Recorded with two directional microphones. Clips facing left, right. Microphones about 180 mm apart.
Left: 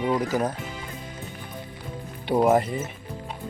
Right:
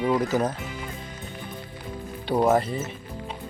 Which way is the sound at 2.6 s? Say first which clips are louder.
Even; 15° left (ahead or behind).